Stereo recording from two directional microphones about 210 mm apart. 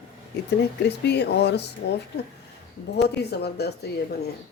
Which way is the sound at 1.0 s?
55° left (ahead or behind).